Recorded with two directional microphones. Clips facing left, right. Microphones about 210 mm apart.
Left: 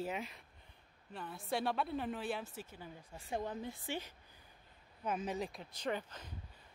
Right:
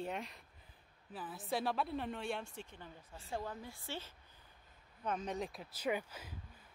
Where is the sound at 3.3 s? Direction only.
20° left (ahead or behind); by 6.3 s 10° right (ahead or behind).